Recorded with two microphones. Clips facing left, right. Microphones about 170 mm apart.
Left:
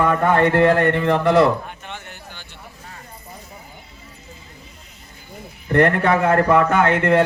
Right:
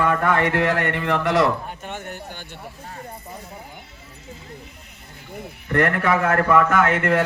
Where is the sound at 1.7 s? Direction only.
45° right (ahead or behind).